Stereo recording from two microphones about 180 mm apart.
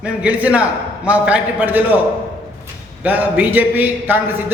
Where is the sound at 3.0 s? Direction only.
10° right (ahead or behind).